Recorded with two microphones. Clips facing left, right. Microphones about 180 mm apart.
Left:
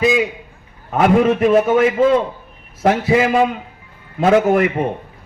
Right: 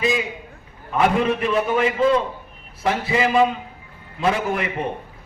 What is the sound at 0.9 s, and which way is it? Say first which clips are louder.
Speech: left 5 dB; 45° left (ahead or behind).